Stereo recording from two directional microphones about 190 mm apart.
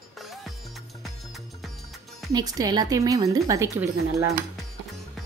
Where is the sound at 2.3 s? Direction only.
20° right (ahead or behind).